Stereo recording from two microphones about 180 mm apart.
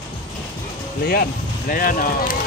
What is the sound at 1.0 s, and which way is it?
Speech, 55° left (ahead or behind).